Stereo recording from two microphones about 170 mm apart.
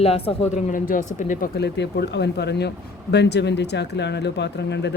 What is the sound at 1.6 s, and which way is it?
A man's voice, 80° left.